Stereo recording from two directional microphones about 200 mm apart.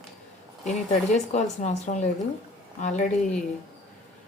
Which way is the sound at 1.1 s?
35° left (ahead or behind).